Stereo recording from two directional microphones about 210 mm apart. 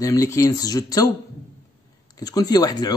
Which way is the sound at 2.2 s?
20° left (ahead or behind).